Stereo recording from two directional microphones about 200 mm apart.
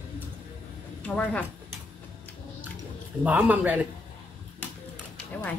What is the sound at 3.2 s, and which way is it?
Speech, 10° right (ahead or behind).